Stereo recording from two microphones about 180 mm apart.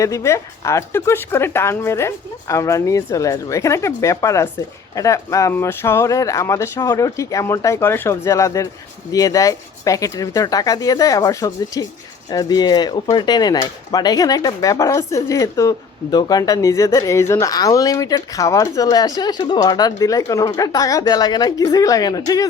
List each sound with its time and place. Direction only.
0.0 s speech: 15° left (ahead or behind)